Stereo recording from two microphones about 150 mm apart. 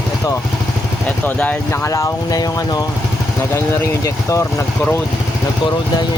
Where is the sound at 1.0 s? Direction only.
10° left (ahead or behind).